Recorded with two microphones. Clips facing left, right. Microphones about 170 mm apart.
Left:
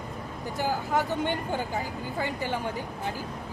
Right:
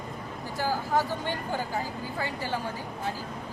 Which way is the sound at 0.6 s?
20° left (ahead or behind).